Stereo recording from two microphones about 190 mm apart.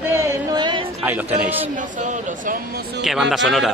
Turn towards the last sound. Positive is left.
turn(degrees=0)  # may be behind; listen again after turning